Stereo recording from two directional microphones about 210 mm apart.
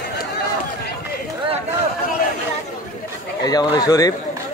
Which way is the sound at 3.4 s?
20° left (ahead or behind).